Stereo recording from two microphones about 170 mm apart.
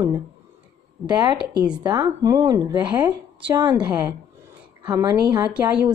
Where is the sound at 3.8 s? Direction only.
10° right (ahead or behind).